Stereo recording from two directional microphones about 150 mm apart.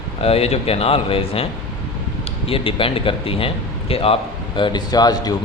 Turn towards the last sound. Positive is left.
turn(degrees=25)  # may be behind; listen again after turning